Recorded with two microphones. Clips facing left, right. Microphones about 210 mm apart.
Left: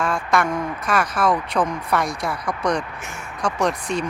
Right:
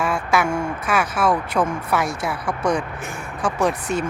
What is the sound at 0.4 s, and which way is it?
Speech, 30° right (ahead or behind).